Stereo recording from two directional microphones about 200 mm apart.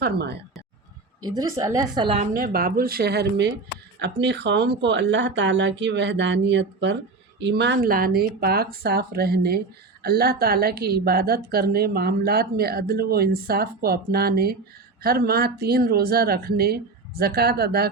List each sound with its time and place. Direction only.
0.0 s speech: 55° right (ahead or behind)
1.4 s a woman's voice: 15° right (ahead or behind)
2.3 s a woman's voice: 45° right (ahead or behind)